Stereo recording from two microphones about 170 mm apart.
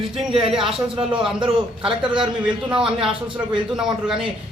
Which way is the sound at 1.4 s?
30° right (ahead or behind).